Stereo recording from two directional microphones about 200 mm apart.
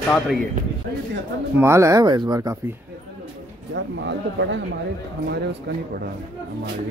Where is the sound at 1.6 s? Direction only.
15° right (ahead or behind).